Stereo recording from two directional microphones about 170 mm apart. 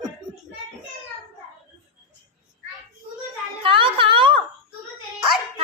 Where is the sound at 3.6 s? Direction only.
30° right (ahead or behind).